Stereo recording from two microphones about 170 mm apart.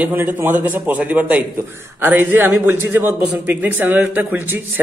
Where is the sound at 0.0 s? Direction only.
10° right (ahead or behind).